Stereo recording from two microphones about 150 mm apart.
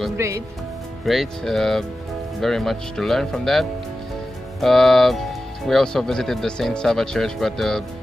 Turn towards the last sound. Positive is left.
turn(degrees=0)  # may be behind; listen again after turning